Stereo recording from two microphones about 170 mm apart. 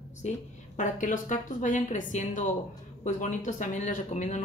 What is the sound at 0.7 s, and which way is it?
Speech, 50° left (ahead or behind).